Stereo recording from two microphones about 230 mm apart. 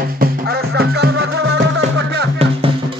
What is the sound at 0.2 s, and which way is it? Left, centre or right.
Music, right.